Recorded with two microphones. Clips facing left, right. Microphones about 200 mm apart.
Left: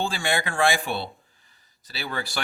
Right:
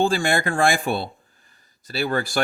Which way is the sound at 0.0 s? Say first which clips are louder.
Right 6 dB; 45° right (ahead or behind).